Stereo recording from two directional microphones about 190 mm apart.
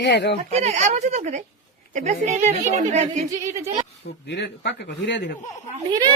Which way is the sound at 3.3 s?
20° right (ahead or behind).